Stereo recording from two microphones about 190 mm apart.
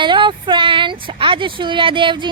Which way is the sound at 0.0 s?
25° right (ahead or behind).